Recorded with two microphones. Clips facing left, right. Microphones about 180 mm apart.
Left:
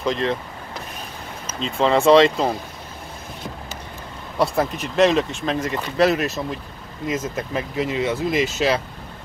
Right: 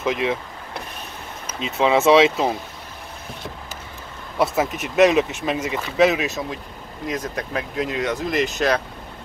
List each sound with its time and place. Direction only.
0.0 s speech: 5° right (ahead or behind)
1.6 s speech: 5° right (ahead or behind)
4.4 s speech: centre (ahead or behind)